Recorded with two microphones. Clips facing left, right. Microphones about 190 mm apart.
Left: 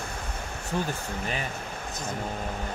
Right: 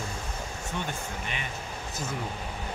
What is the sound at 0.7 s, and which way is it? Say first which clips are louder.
Speech: left 6 dB; 35° left (ahead or behind).